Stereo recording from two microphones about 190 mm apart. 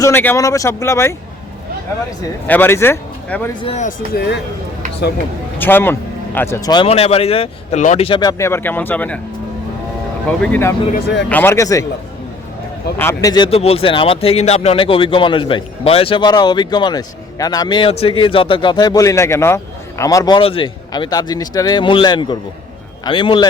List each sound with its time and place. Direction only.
0.0 s speech: 10° left (ahead or behind)
2.5 s speech: 10° left (ahead or behind)
3.6 s speech: 30° left (ahead or behind)
3.8 s speech: 55° left (ahead or behind)
5.5 s speech: 10° left (ahead or behind)
10.2 s speech: 10° left (ahead or behind)
13.0 s speech: 15° left (ahead or behind)